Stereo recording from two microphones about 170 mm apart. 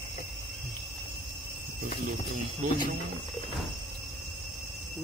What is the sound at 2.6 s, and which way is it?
Speech, 50° right (ahead or behind).